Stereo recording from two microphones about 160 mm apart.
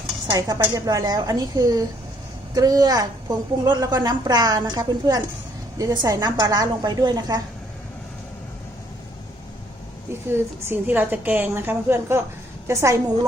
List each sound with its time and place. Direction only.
0.3 s a woman's voice: 25° right (ahead or behind)
10.3 s a woman's voice: 15° right (ahead or behind)